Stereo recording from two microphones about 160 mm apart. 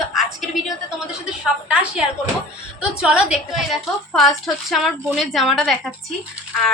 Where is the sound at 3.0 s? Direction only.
5° right (ahead or behind).